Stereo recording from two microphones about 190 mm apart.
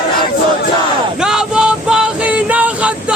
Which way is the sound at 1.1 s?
5° right (ahead or behind).